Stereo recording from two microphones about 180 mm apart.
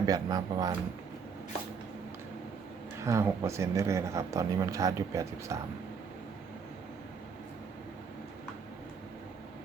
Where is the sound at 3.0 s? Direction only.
15° right (ahead or behind).